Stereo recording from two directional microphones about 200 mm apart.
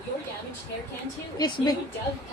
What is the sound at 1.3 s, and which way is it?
Speech, 20° left (ahead or behind).